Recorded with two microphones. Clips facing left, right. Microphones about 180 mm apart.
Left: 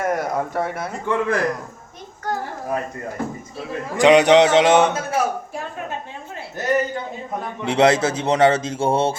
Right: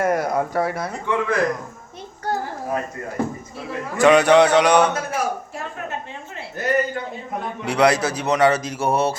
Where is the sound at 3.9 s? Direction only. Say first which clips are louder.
Left 1 dB; 20° left (ahead or behind).